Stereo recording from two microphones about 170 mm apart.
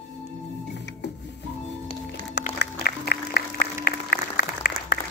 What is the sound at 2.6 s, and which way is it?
Applause, 70° left (ahead or behind).